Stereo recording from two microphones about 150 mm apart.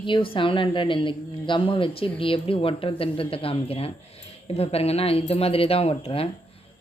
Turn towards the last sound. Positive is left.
turn(degrees=40)  # may be behind; listen again after turning